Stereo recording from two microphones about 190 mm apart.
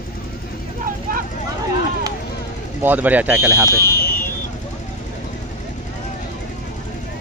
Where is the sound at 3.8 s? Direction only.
55° left (ahead or behind).